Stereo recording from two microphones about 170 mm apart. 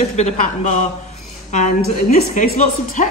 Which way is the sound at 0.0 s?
40° left (ahead or behind).